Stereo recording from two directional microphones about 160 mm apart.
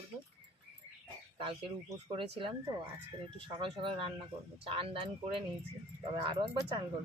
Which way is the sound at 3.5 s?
30° right (ahead or behind).